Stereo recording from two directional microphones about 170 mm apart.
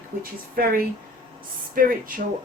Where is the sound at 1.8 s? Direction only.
55° right (ahead or behind).